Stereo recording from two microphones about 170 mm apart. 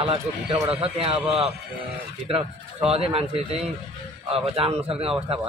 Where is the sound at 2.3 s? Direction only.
35° right (ahead or behind).